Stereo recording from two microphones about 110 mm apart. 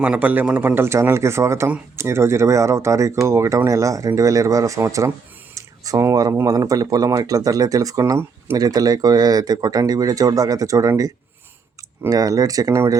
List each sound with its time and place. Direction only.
0.0 s speech: 15° right (ahead or behind)
5.5 s a sound: 30° right (ahead or behind)
6.3 s speech: 30° right (ahead or behind)